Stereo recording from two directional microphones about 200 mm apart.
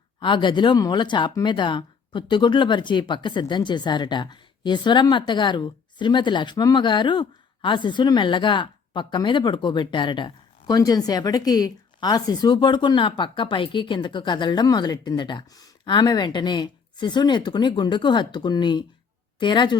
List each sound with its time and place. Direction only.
0.2 s speech: 25° left (ahead or behind)